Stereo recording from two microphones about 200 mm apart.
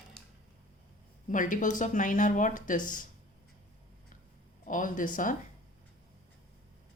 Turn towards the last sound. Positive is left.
turn(degrees=40)  # may be behind; listen again after turning